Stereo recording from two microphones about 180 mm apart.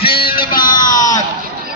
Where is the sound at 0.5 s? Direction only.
50° left (ahead or behind).